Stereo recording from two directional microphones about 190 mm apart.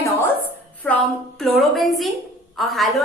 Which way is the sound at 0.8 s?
5° left (ahead or behind).